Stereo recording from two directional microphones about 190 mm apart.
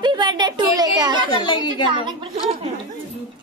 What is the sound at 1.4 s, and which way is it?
Speech, 25° left (ahead or behind).